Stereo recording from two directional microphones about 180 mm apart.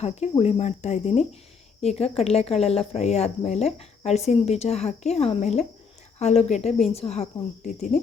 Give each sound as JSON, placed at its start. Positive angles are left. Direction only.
{"t": 0.0, "sound": "speech", "side_deg": 35}